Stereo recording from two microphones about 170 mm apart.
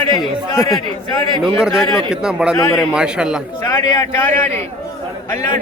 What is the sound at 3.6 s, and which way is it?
Speech, 20° left (ahead or behind).